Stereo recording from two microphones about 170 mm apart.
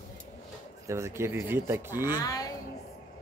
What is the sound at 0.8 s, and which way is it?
Speech, 15° right (ahead or behind).